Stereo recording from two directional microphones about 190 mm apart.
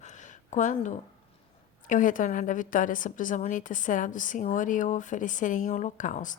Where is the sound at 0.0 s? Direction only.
40° left (ahead or behind).